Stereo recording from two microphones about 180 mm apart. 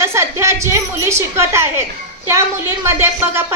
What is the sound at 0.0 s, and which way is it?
A woman's voice, 15° right (ahead or behind).